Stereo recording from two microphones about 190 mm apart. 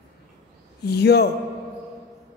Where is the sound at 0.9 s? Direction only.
60° left (ahead or behind).